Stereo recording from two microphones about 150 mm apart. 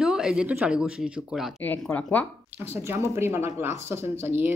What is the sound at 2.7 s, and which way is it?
Speech, 20° right (ahead or behind).